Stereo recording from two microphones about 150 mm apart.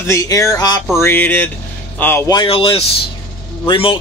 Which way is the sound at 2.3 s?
35° left (ahead or behind).